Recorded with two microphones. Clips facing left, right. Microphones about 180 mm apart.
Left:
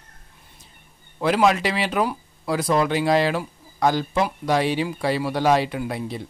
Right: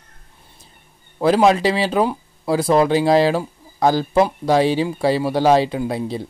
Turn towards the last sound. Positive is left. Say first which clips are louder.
# right 5 dB
turn(degrees=-30)  # may be behind; listen again after turning